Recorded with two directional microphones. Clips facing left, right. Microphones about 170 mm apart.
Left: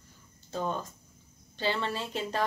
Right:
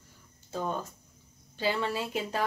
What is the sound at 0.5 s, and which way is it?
Speech, 5° right (ahead or behind).